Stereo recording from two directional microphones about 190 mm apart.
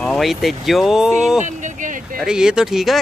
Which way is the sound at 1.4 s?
40° right (ahead or behind).